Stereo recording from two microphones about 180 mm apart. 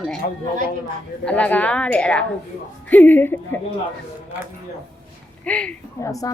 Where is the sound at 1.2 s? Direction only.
5° left (ahead or behind).